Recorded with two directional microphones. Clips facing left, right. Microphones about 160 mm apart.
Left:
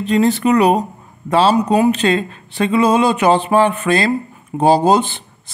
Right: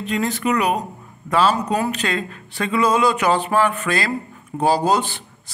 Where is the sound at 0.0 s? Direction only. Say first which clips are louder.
Left 8 dB; 30° left (ahead or behind).